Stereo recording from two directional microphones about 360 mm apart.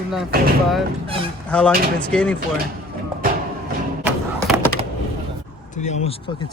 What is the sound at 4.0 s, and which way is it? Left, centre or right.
Thump, centre.